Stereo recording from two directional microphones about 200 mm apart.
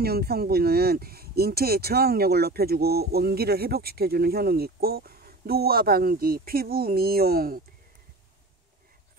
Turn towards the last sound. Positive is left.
turn(degrees=-50)  # may be behind; listen again after turning